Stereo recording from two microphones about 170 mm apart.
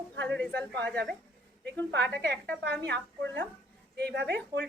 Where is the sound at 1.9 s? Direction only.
90° right.